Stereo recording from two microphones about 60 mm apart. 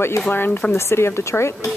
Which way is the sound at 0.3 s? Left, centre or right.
Left.